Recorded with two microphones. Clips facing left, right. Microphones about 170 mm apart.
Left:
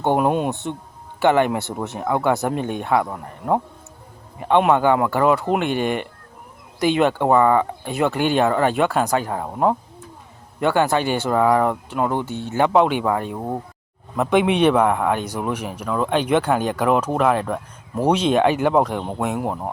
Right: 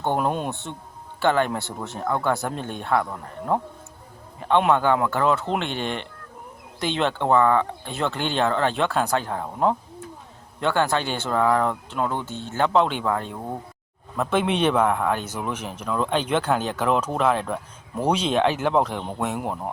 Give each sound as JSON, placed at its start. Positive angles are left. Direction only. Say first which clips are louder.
{"t": 0.0, "sound": "speech", "louder": "left 5 dB", "side_deg": 15}